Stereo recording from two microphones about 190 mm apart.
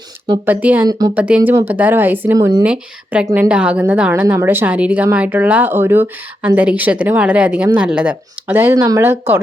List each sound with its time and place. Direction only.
0.4 s a woman's voice: 10° right (ahead or behind)
0.9 s speech: 20° right (ahead or behind)
1.1 s a woman's voice: 5° right (ahead or behind)
2.6 s a woman's voice: 5° right (ahead or behind)